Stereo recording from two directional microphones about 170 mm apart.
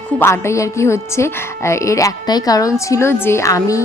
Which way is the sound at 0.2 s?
15° left (ahead or behind).